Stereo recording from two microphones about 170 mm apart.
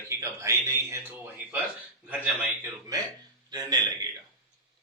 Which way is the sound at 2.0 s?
10° right (ahead or behind).